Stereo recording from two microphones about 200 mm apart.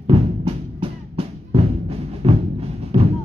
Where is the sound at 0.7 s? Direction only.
30° right (ahead or behind).